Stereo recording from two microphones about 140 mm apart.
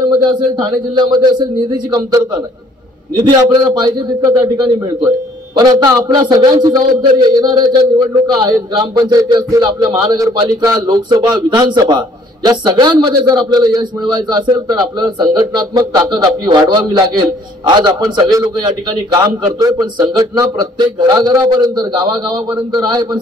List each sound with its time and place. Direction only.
0.2 s a man's voice: 30° right (ahead or behind)